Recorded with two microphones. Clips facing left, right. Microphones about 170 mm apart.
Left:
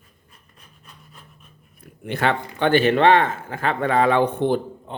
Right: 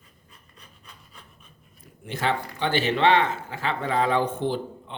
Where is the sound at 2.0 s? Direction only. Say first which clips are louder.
Left 4 dB; 65° left (ahead or behind).